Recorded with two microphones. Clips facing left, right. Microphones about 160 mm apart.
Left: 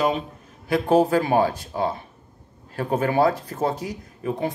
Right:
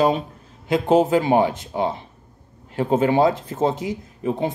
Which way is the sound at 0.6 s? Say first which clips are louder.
Right 1 dB; 20° right (ahead or behind).